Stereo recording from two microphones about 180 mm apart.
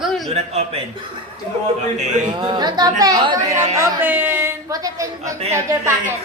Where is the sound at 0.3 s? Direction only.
35° right (ahead or behind).